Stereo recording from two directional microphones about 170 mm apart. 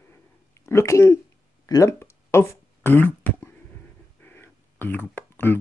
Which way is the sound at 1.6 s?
20° left (ahead or behind).